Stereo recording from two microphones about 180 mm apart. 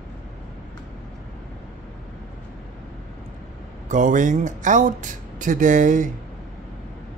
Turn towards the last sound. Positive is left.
turn(degrees=-45)  # may be behind; listen again after turning